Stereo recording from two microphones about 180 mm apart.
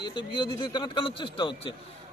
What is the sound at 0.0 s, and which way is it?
Speech, 25° left (ahead or behind).